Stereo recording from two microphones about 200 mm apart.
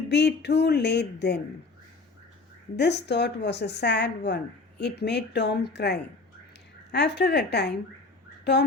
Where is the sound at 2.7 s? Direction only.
55° left (ahead or behind).